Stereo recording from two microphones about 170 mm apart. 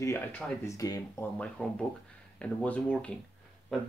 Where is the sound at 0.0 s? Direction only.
15° left (ahead or behind).